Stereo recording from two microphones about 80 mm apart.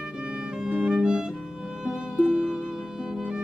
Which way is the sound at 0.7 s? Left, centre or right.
Centre.